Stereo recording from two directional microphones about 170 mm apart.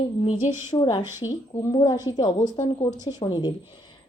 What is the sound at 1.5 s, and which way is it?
Speech, 25° left (ahead or behind).